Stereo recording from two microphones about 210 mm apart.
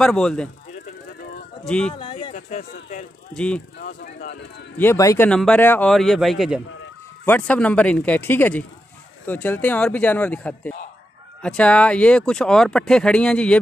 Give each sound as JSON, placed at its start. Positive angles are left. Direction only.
{"t": 0.0, "sound": "speech", "side_deg": 5}
{"t": 1.6, "sound": "speech", "side_deg": 5}
{"t": 2.0, "sound": "speech", "side_deg": 20}
{"t": 2.3, "sound": "speech", "side_deg": 40}
{"t": 3.3, "sound": "speech", "side_deg": 5}
{"t": 3.8, "sound": "speech", "side_deg": 45}
{"t": 4.7, "sound": "speech", "side_deg": 15}